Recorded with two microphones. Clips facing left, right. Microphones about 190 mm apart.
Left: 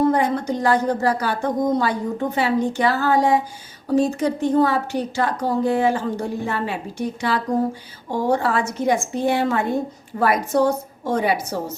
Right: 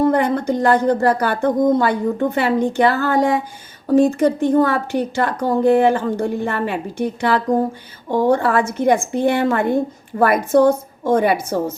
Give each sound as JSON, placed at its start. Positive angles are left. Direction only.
{"t": 0.1, "sound": "a woman's voice", "side_deg": -55}